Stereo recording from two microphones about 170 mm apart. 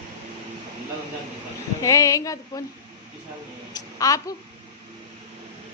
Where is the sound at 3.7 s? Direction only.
20° left (ahead or behind).